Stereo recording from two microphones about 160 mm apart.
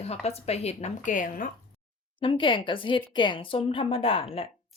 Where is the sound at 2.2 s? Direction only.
30° left (ahead or behind).